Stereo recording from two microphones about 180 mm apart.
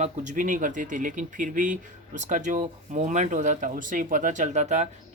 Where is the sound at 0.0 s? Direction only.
45° right (ahead or behind).